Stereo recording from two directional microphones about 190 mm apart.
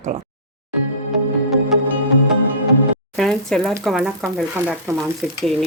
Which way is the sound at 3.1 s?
5° left (ahead or behind).